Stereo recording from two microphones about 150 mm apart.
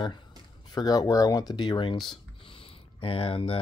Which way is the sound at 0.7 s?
25° left (ahead or behind).